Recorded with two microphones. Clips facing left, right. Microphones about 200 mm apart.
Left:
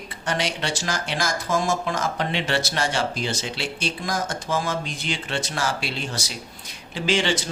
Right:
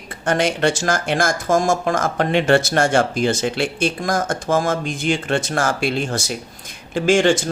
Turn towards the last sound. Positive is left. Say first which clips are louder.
# right 8 dB
turn(degrees=-50)  # may be behind; listen again after turning